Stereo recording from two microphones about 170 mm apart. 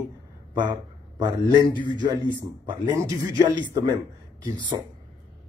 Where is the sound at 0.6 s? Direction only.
25° right (ahead or behind).